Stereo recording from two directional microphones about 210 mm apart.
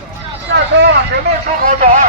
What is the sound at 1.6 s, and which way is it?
Speech, 40° right (ahead or behind).